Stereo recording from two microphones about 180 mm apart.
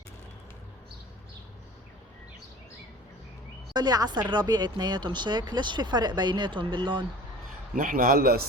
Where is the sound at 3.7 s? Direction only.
20° right (ahead or behind).